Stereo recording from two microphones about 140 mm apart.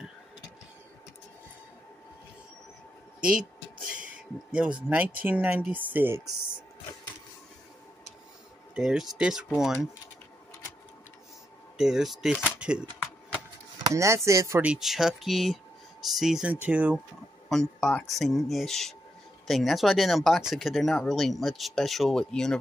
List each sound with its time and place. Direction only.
3.2 s speech: 5° right (ahead or behind)
4.5 s speech: 10° right (ahead or behind)
8.7 s speech: 5° right (ahead or behind)
11.7 s speech: 5° right (ahead or behind)
12.5 s a sound: 5° right (ahead or behind)
13.8 s chopping: 20° right (ahead or behind)
14.6 s speech: 5° right (ahead or behind)
17.5 s speech: 5° left (ahead or behind)